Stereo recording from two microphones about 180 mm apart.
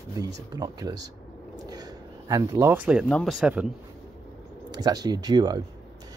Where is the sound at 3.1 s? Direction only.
Centre (ahead or behind).